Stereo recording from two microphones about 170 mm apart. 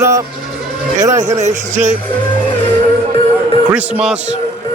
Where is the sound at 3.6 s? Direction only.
10° right (ahead or behind).